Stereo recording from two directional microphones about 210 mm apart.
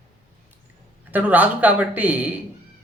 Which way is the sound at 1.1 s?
10° right (ahead or behind).